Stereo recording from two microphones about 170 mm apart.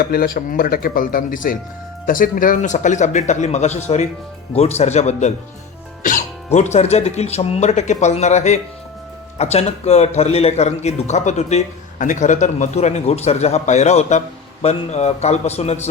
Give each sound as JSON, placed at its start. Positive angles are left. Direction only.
{"t": 0.0, "sound": "a man's voice", "side_deg": 60}